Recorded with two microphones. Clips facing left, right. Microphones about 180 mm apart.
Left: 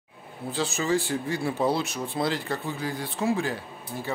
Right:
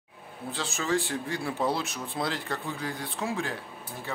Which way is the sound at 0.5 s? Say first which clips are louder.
Left 4 dB; centre (ahead or behind).